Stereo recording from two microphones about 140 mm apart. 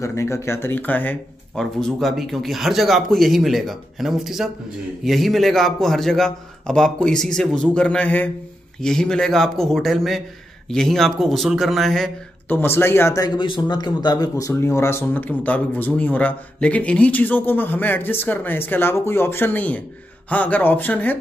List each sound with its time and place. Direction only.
0.0 s speech: 20° left (ahead or behind)
1.5 s a man's voice: 5° left (ahead or behind)
12.4 s speech: 15° left (ahead or behind)